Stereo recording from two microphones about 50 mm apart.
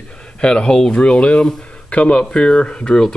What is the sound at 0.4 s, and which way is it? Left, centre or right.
Speech, centre.